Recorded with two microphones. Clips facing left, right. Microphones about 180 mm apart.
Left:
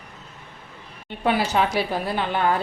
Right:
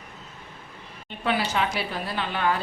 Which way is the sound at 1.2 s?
45° left (ahead or behind).